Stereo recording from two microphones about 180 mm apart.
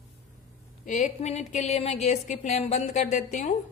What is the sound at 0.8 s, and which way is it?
A woman's voice, 45° left (ahead or behind).